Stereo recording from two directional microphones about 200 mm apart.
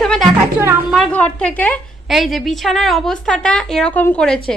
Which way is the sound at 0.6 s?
10° right (ahead or behind).